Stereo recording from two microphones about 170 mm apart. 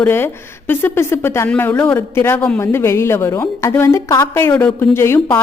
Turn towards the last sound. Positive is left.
turn(degrees=15)  # may be behind; listen again after turning